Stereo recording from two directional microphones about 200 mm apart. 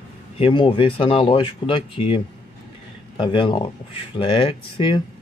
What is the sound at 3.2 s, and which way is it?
Speech, 25° left (ahead or behind).